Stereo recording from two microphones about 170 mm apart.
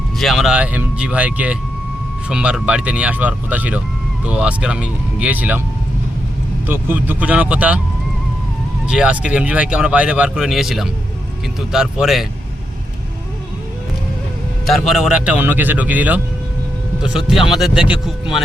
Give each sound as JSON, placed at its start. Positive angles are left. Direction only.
{"t": 0.2, "sound": "speech", "side_deg": 0}
{"t": 6.7, "sound": "speech", "side_deg": -10}
{"t": 8.9, "sound": "speech", "side_deg": -5}
{"t": 14.7, "sound": "speech", "side_deg": 0}